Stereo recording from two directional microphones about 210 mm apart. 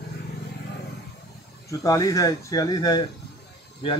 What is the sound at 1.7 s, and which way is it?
Speech, 15° left (ahead or behind).